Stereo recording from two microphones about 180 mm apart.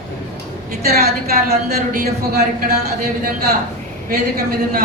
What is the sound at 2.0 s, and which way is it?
Speech, 60° right (ahead or behind).